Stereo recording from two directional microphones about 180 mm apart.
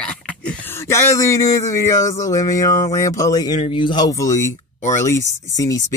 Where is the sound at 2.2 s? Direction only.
20° left (ahead or behind).